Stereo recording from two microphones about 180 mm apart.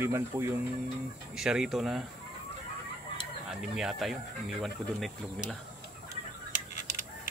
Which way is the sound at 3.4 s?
Centre (ahead or behind).